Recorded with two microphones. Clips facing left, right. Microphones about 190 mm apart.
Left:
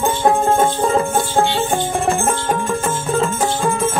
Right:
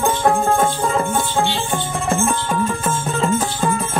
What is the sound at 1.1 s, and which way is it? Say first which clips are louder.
Music: left 3 dB; 45° left (ahead or behind).